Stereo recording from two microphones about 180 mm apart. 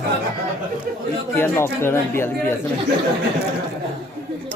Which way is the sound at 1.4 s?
15° left (ahead or behind).